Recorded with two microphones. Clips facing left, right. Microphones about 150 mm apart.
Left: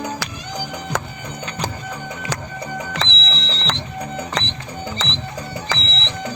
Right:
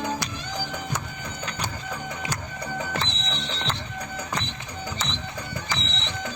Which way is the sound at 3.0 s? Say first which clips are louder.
Left 4 dB; 90° left.